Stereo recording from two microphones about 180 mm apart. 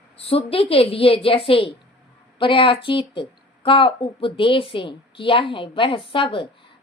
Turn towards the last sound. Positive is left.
turn(degrees=30)  # may be behind; listen again after turning